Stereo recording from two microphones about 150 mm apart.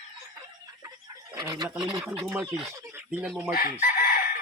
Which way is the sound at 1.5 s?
30° right (ahead or behind).